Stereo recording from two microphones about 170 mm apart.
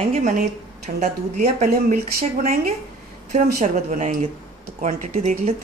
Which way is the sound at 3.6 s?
45° right (ahead or behind).